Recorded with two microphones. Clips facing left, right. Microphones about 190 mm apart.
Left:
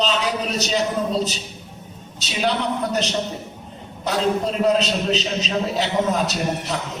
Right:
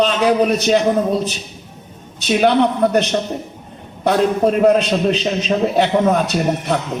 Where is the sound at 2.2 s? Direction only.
60° right (ahead or behind).